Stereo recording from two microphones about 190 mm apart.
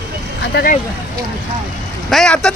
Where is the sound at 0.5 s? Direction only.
50° left (ahead or behind).